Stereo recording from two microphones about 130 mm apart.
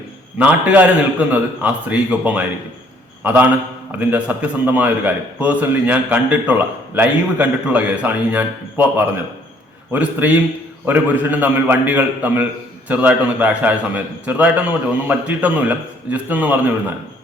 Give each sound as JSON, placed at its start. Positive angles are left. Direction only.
{"t": 0.3, "sound": "a man's voice", "side_deg": -10}
{"t": 3.9, "sound": "a man's voice", "side_deg": -10}